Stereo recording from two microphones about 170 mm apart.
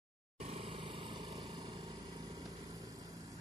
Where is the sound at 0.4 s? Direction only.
35° right (ahead or behind).